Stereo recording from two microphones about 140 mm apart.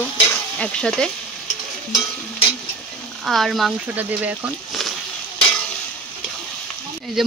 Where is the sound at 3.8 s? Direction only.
10° right (ahead or behind).